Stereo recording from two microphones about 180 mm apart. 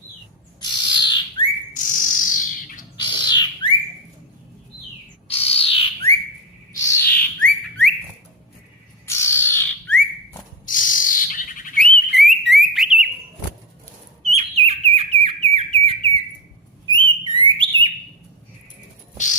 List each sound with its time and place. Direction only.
0.6 s bird: 25° left (ahead or behind)
1.7 s bird: 45° left (ahead or behind)
3.0 s bird: 25° left (ahead or behind)
5.3 s bird: 35° left (ahead or behind)
6.7 s bird: 10° left (ahead or behind)
9.0 s bird: 15° left (ahead or behind)
10.7 s bird: 50° left (ahead or behind)
12.1 s alarm: centre (ahead or behind)
14.3 s bird: 35° right (ahead or behind)
19.1 s music: 45° left (ahead or behind)